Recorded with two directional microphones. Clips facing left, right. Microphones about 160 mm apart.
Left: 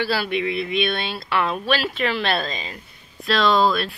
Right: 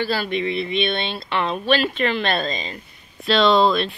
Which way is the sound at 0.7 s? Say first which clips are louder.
Even; 25° right (ahead or behind).